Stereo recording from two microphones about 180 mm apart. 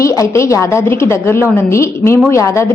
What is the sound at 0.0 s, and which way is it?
A woman's voice, 15° left (ahead or behind).